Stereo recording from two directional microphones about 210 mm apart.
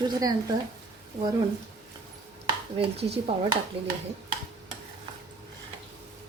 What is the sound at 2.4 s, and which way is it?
Speech, 25° right (ahead or behind).